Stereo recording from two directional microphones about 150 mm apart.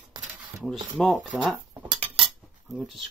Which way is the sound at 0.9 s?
Centre (ahead or behind).